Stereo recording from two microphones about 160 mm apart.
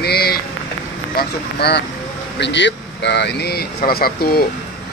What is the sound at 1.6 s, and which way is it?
Speech, 90° left.